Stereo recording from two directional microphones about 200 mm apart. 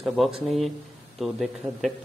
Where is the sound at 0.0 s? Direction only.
Centre (ahead or behind).